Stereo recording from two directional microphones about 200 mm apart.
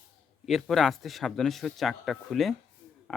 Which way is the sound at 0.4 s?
Centre (ahead or behind).